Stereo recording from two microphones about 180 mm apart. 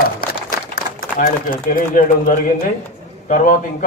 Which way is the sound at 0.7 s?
55° left (ahead or behind).